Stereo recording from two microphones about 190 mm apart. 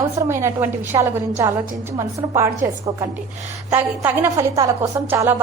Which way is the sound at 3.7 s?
10° right (ahead or behind).